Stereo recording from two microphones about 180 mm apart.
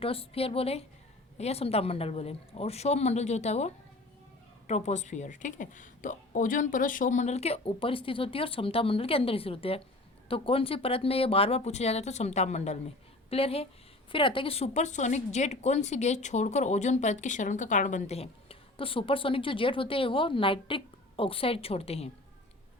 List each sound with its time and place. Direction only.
0.0 s speech: 30° left (ahead or behind)